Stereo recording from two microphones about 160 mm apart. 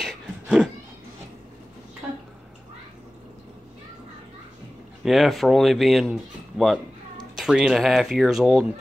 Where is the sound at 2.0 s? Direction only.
5° right (ahead or behind).